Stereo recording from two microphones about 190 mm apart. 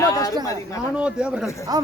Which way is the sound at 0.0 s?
15° left (ahead or behind).